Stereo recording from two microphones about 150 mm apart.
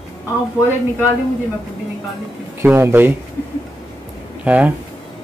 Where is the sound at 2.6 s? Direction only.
15° right (ahead or behind).